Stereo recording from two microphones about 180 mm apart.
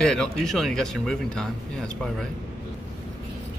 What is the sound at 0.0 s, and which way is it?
A man's voice, 5° left (ahead or behind).